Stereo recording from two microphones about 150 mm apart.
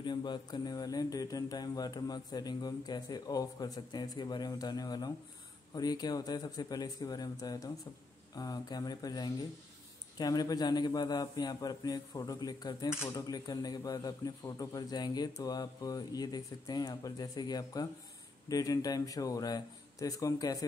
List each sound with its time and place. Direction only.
0.0 s a man's voice: 30° left (ahead or behind)